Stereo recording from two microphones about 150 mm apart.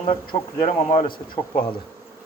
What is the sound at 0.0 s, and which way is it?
Speech, 35° left (ahead or behind).